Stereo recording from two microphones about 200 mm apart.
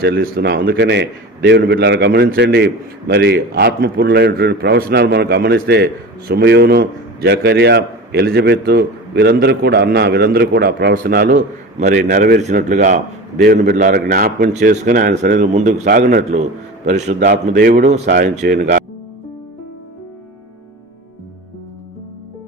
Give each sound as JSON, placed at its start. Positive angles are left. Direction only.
{"t": 0.0, "sound": "a man's voice", "side_deg": -50}
{"t": 17.2, "sound": "a man's voice", "side_deg": -45}